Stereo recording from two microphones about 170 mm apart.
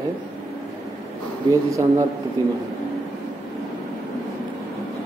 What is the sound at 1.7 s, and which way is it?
Speech, 20° right (ahead or behind).